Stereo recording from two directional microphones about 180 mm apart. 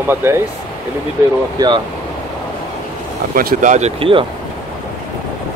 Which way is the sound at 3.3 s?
55° right (ahead or behind).